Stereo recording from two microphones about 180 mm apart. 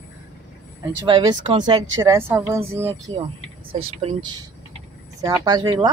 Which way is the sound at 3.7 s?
30° right (ahead or behind).